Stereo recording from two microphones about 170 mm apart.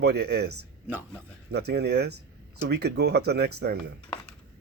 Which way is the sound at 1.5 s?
75° right (ahead or behind).